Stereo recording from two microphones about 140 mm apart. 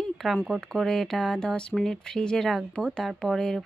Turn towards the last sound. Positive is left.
turn(degrees=5)  # may be behind; listen again after turning